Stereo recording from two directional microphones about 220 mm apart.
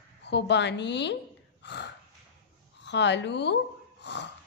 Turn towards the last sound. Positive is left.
turn(degrees=50)  # may be behind; listen again after turning